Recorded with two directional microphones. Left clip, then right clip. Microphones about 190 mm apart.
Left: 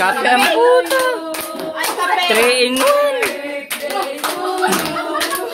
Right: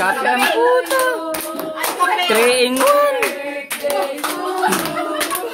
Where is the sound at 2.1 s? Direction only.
15° right (ahead or behind).